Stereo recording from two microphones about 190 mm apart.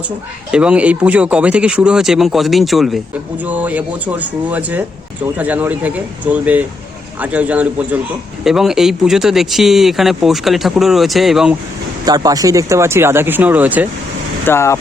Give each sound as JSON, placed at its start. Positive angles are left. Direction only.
{"t": 0.5, "sound": "speech", "side_deg": -5}
{"t": 12.0, "sound": "speech", "side_deg": -20}
{"t": 14.4, "sound": "speech", "side_deg": 15}